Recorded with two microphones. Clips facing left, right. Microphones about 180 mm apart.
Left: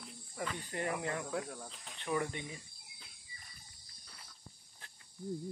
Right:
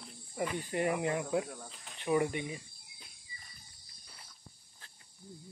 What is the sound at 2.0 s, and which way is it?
Speech, 15° right (ahead or behind).